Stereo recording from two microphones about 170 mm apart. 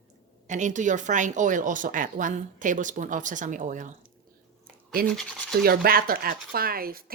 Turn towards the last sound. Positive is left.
turn(degrees=-60)  # may be behind; listen again after turning